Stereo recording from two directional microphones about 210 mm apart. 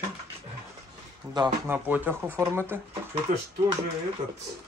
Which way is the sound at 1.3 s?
20° right (ahead or behind).